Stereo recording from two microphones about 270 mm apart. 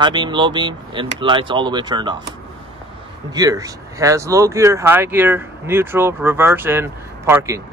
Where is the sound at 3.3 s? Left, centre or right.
Centre.